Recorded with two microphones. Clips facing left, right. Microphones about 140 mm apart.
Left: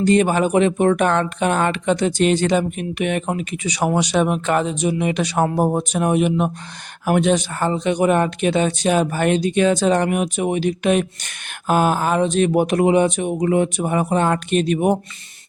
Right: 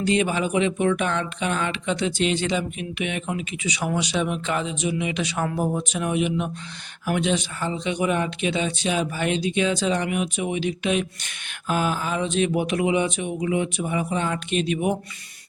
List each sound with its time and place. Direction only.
0.0 s speech: 45° left (ahead or behind)